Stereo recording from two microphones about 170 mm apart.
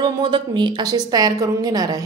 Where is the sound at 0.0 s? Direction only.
30° right (ahead or behind).